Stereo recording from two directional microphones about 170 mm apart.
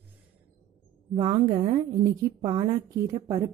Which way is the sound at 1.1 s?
25° right (ahead or behind).